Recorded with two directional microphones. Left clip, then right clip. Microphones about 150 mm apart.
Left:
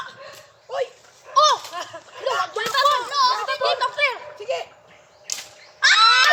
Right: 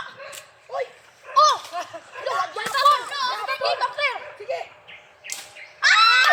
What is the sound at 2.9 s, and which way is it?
Children playing, 45° left (ahead or behind).